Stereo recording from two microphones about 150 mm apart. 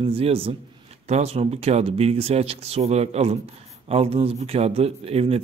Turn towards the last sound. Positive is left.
turn(degrees=-40)  # may be behind; listen again after turning